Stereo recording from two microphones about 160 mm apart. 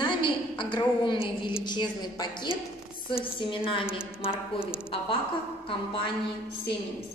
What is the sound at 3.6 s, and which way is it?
Speech, 35° left (ahead or behind).